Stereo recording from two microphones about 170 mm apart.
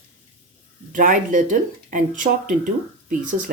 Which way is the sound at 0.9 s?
50° right (ahead or behind).